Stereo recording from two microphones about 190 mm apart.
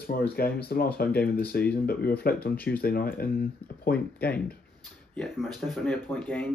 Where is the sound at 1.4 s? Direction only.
55° left (ahead or behind).